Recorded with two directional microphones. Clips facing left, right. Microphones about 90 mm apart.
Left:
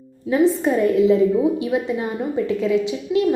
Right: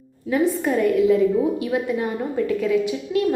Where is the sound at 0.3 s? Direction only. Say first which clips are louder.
Left 3 dB; 25° left (ahead or behind).